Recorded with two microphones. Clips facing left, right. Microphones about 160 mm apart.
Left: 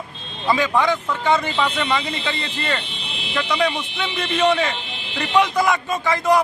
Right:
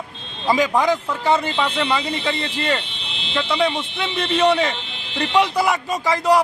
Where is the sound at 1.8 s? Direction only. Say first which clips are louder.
Right 1 dB; 10° right (ahead or behind).